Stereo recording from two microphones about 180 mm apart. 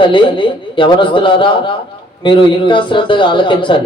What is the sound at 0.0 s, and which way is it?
A man's voice, 25° left (ahead or behind).